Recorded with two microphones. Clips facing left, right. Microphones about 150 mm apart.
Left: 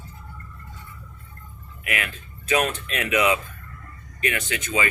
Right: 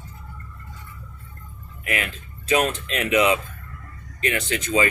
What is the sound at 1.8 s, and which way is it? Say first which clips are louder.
Speech: right 2 dB; 30° right (ahead or behind).